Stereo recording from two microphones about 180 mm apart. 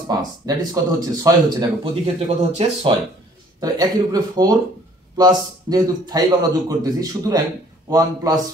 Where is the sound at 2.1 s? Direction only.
35° right (ahead or behind).